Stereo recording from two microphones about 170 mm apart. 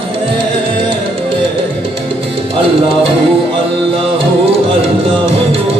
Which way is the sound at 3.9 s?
35° right (ahead or behind).